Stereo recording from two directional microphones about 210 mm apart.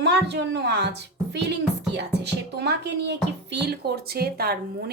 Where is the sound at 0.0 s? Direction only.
55° right (ahead or behind).